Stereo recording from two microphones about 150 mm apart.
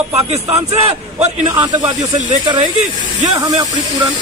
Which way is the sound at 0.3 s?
45° right (ahead or behind).